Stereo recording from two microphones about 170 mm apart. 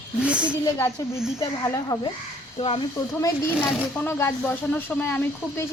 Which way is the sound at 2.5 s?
35° left (ahead or behind).